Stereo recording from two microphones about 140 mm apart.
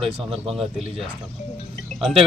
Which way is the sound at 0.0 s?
Centre (ahead or behind).